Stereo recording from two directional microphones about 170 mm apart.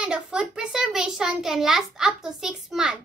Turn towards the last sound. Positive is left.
turn(degrees=-5)  # may be behind; listen again after turning